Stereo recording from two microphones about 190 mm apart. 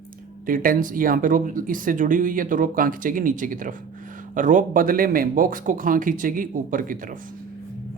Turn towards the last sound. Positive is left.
turn(degrees=-45)  # may be behind; listen again after turning